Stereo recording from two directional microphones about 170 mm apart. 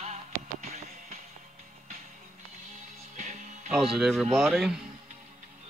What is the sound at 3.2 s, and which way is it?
Music, 45° right (ahead or behind).